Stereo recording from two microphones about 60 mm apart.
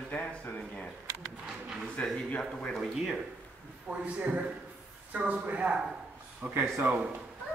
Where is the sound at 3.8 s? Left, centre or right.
Right.